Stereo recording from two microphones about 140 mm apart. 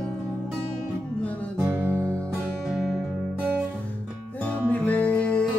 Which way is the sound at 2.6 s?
5° right (ahead or behind).